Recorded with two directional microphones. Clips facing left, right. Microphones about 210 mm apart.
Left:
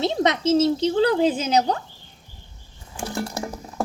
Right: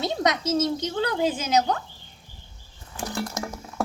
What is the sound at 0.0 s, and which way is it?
A woman's voice, 25° left (ahead or behind).